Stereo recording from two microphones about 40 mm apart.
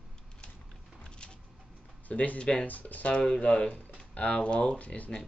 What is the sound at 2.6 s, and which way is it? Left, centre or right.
Speech, left.